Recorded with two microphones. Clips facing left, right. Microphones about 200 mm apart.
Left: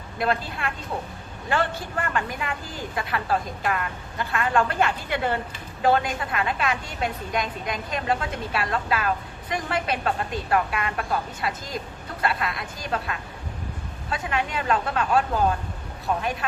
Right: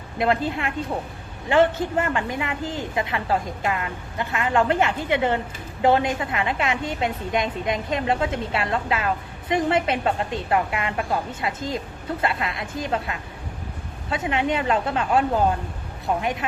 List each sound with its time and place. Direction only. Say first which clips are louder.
0.2 s a woman's voice: right 4 dB; 20° right (ahead or behind)
16.2 s a woman's voice: right 2 dB; 20° right (ahead or behind)